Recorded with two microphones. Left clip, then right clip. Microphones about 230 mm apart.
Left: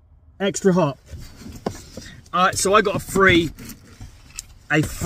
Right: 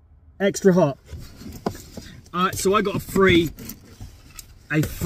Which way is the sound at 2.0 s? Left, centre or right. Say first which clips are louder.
Left 5 dB; centre.